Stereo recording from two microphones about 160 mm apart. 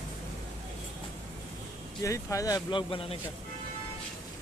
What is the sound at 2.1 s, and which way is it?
Speech, 20° left (ahead or behind).